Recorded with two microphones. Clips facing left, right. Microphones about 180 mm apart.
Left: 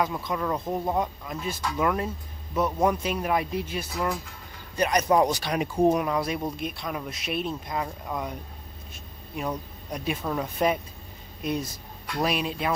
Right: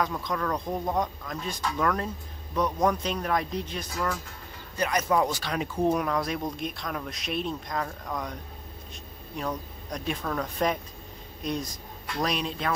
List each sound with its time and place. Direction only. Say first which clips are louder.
0.0 s speech: left 1 dB; 5° left (ahead or behind)